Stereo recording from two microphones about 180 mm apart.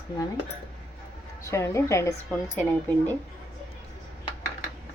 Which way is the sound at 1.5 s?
15° left (ahead or behind).